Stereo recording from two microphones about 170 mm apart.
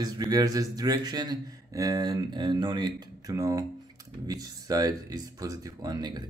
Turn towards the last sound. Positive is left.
turn(degrees=-25)  # may be behind; listen again after turning